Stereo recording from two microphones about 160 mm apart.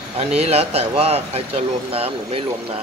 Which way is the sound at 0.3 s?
40° right (ahead or behind).